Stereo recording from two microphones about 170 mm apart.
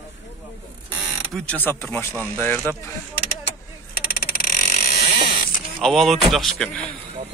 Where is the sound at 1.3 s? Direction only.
10° left (ahead or behind).